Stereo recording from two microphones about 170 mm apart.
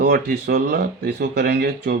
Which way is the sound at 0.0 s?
65° right (ahead or behind).